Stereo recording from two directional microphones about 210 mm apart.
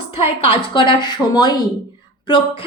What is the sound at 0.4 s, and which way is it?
A woman's voice, 25° left (ahead or behind).